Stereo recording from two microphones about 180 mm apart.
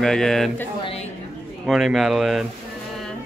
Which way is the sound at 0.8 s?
35° left (ahead or behind).